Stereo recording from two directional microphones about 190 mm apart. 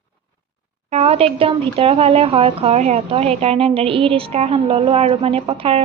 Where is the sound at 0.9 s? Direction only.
30° right (ahead or behind).